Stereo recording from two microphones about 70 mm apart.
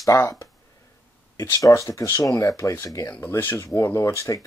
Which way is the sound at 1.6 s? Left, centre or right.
Left.